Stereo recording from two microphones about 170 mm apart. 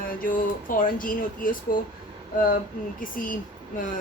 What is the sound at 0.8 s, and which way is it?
Speech, 55° left (ahead or behind).